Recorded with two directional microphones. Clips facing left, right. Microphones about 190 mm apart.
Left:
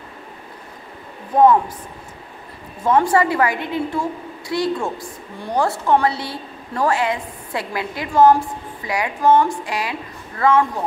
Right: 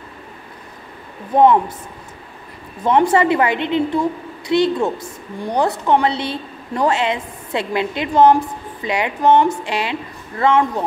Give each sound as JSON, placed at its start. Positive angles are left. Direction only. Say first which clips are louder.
{"t": 2.8, "sound": "a woman's voice", "louder": "right 2 dB", "side_deg": -20}